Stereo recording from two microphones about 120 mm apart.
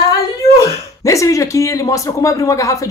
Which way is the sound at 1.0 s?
25° left (ahead or behind).